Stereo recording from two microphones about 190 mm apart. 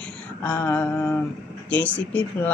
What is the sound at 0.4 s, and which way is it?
Speech, 10° left (ahead or behind).